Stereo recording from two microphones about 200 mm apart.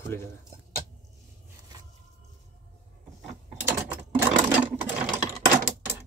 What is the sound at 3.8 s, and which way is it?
Sewing machine, 10° right (ahead or behind).